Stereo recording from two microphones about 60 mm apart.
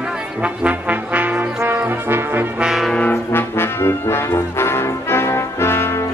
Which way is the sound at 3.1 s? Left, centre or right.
Left.